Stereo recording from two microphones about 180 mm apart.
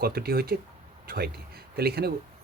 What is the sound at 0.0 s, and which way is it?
Speech, 55° right (ahead or behind).